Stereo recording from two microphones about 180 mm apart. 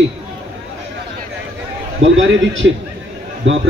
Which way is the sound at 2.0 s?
90° right.